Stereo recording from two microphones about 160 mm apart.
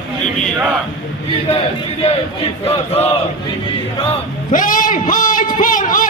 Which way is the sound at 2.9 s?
40° left (ahead or behind).